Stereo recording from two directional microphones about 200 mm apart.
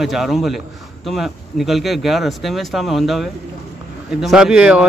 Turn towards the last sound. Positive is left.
turn(degrees=-5)  # may be behind; listen again after turning